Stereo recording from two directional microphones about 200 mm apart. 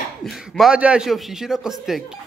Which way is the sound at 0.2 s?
Centre (ahead or behind).